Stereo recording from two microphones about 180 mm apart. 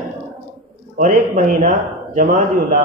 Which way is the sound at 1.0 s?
50° right (ahead or behind).